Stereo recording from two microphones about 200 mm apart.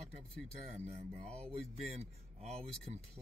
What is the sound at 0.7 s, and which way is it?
Speech, 30° right (ahead or behind).